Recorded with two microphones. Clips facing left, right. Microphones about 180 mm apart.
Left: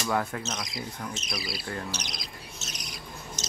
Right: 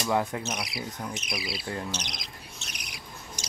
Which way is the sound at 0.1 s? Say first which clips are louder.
Right 2 dB; 20° right (ahead or behind).